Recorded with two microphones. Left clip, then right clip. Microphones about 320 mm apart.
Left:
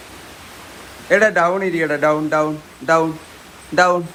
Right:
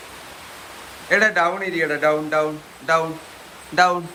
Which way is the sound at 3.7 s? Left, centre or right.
Centre.